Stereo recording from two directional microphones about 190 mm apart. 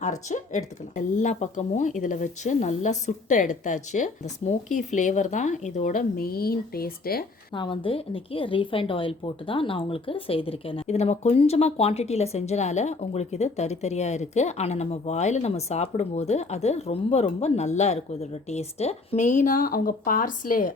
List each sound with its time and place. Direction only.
0.0 s a woman's voice: 40° left (ahead or behind)
7.5 s a woman's voice: 25° left (ahead or behind); by 20.7 s 45° left (ahead or behind)